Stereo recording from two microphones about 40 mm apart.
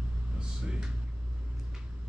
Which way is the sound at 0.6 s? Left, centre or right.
Centre.